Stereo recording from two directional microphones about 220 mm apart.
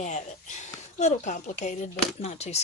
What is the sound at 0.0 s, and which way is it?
Speech, 30° left (ahead or behind).